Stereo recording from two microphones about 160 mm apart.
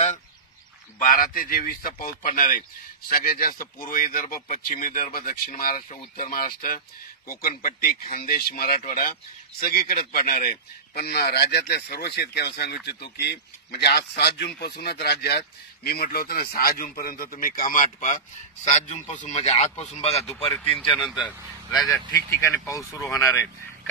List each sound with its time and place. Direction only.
1.0 s speech: 60° left (ahead or behind); by 20.2 s 40° left (ahead or behind)
20.5 s speech: 5° left (ahead or behind)
21.0 s speech: 5° right (ahead or behind)
22.7 s speech: 20° left (ahead or behind)